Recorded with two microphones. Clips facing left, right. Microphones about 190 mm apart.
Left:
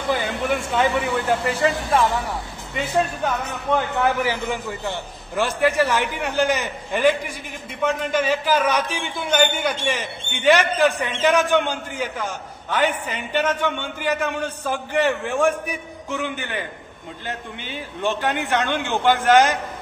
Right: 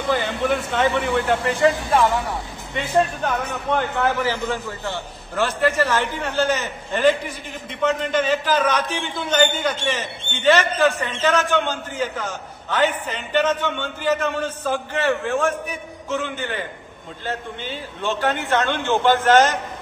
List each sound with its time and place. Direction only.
0.1 s speech: 10° left (ahead or behind)
3.7 s a man's voice: 15° left (ahead or behind)